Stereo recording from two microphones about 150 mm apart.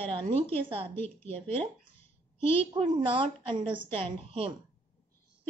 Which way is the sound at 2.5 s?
35° right (ahead or behind).